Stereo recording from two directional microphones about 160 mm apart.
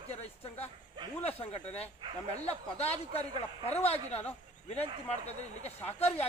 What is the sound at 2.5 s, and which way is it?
Speech, 40° left (ahead or behind).